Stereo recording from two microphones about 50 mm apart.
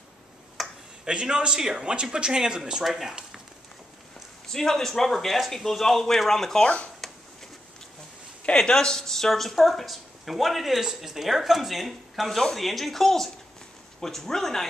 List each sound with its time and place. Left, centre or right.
0.6 s finger snapping: centre
1.0 s speech: centre
4.5 s a woman's voice: centre
6.6 s speech: left
8.5 s a woman's voice: centre